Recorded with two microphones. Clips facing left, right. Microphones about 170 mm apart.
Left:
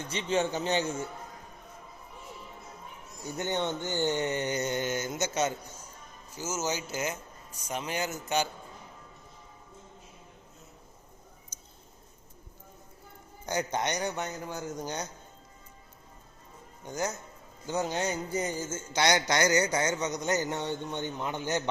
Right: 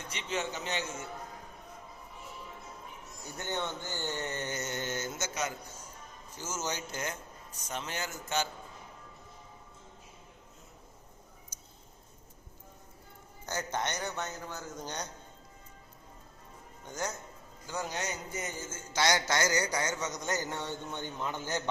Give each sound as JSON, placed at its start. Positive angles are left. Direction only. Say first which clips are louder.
{"t": 0.1, "sound": "a man's voice", "louder": "left 7 dB", "side_deg": 30}
{"t": 3.3, "sound": "speech", "louder": "left 5 dB", "side_deg": 20}
{"t": 5.3, "sound": "a man's voice", "louder": "left 8 dB", "side_deg": 25}
{"t": 6.3, "sound": "speech", "louder": "left 5 dB", "side_deg": 5}
{"t": 11.5, "sound": "a sound", "louder": "left 1 dB", "side_deg": -10}
{"t": 13.4, "sound": "speech", "louder": "left 4 dB", "side_deg": 15}
{"t": 16.8, "sound": "a man's voice", "louder": "left 5 dB", "side_deg": 10}
{"t": 17.7, "sound": "a man's voice", "louder": "left 6 dB", "side_deg": 25}